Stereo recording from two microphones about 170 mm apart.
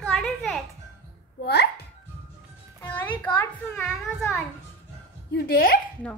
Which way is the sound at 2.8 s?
10° left (ahead or behind).